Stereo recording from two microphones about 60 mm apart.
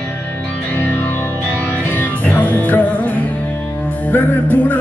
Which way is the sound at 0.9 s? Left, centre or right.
Left.